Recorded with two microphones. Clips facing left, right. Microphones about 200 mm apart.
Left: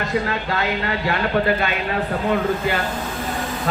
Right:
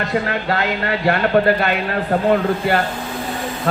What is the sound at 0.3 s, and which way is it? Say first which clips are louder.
Speech: right 3 dB; 55° right (ahead or behind).